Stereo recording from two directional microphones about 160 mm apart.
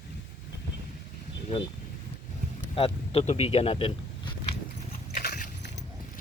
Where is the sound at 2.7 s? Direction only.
35° left (ahead or behind).